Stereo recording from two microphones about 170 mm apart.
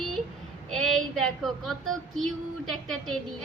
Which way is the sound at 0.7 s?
Centre (ahead or behind).